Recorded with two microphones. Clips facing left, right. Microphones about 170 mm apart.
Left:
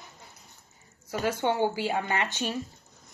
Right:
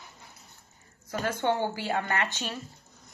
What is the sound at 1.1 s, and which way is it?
Speech, 10° left (ahead or behind).